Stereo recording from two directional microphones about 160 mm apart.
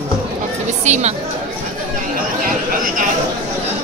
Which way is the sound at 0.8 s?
45° right (ahead or behind).